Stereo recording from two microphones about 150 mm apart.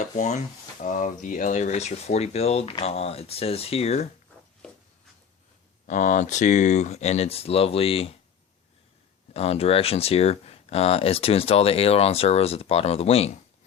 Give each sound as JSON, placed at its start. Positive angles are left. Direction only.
{"t": 0.0, "sound": "speech", "side_deg": 50}
{"t": 5.8, "sound": "speech", "side_deg": 55}
{"t": 9.3, "sound": "speech", "side_deg": 45}